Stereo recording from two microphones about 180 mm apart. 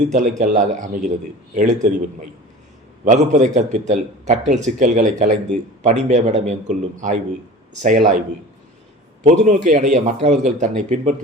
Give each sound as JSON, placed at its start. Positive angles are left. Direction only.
{"t": 0.0, "sound": "a man's voice", "side_deg": -40}
{"t": 3.0, "sound": "a man's voice", "side_deg": -45}
{"t": 9.2, "sound": "a man's voice", "side_deg": -40}